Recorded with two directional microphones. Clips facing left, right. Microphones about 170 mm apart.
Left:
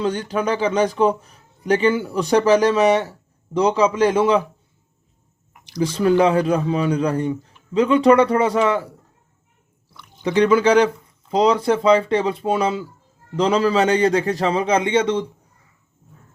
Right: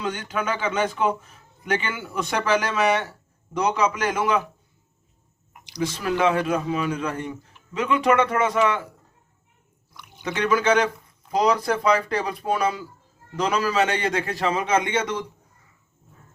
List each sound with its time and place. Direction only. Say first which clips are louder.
0.0 s a man's voice: left 6 dB; 35° left (ahead or behind)
5.8 s a man's voice: left 6 dB; 30° left (ahead or behind)
9.9 s a sound: even; 15° right (ahead or behind)
10.2 s a man's voice: left 6 dB; 30° left (ahead or behind)